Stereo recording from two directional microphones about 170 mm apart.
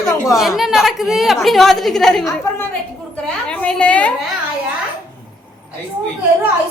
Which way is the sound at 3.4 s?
5° left (ahead or behind).